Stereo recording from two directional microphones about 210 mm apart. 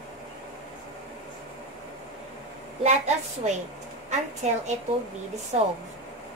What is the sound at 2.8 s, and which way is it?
A woman's voice, 35° right (ahead or behind).